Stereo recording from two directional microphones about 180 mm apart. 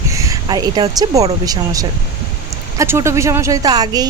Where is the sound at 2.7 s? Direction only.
15° right (ahead or behind).